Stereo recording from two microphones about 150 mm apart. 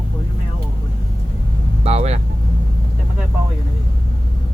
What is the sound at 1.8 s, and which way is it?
Speech, 45° right (ahead or behind).